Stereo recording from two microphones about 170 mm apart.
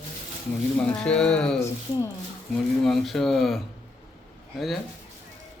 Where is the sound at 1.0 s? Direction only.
5° left (ahead or behind).